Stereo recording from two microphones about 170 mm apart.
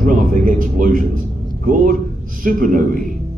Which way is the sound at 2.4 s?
55° right (ahead or behind).